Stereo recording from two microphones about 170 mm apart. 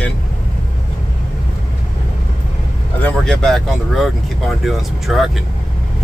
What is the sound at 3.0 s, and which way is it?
Speech, 5° left (ahead or behind).